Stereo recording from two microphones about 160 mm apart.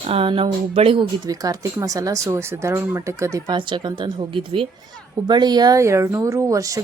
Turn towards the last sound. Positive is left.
turn(degrees=-20)  # may be behind; listen again after turning